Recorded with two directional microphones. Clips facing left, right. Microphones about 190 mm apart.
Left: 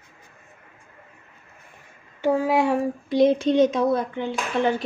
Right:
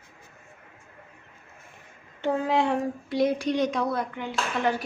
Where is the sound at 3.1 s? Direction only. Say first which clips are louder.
Left 6 dB; 25° left (ahead or behind).